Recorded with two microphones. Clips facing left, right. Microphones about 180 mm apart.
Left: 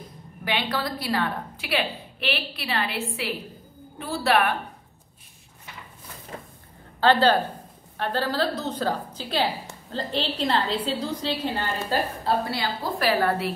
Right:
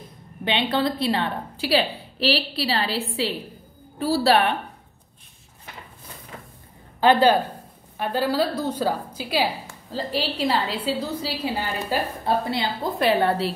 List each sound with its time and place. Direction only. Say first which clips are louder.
0.5 s a woman's voice: right 5 dB; 25° right (ahead or behind)
7.0 s a woman's voice: right 2 dB; 10° right (ahead or behind)
12.4 s a woman's voice: right 3 dB; 20° right (ahead or behind)